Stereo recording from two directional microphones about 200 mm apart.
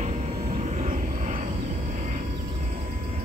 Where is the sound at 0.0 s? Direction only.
35° right (ahead or behind).